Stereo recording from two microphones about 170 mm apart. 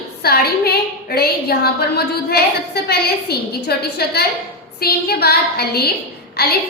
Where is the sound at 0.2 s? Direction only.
65° left (ahead or behind).